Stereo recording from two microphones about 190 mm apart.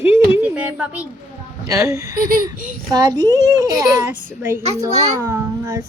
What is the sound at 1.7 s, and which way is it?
A child's voice, 15° right (ahead or behind).